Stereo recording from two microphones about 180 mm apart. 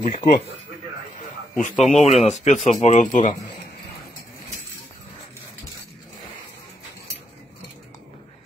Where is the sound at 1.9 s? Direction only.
40° left (ahead or behind).